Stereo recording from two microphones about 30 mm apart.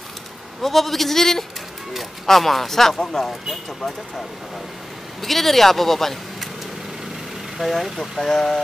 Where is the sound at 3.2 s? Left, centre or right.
Centre.